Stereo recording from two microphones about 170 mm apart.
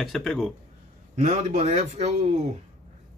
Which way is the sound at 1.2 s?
40° right (ahead or behind).